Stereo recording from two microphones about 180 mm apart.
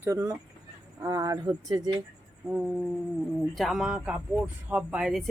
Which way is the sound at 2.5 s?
5° right (ahead or behind).